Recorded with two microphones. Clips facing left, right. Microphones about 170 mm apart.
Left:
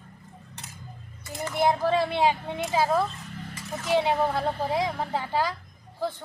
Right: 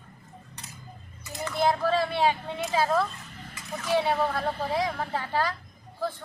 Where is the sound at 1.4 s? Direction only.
20° left (ahead or behind).